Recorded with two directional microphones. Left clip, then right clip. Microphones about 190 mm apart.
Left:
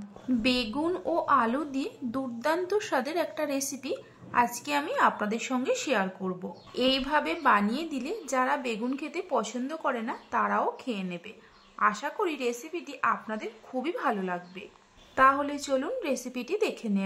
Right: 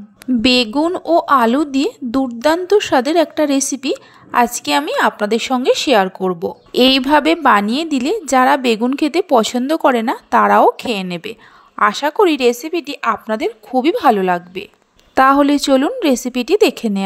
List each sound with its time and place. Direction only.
0.4 s a woman's voice: 40° right (ahead or behind)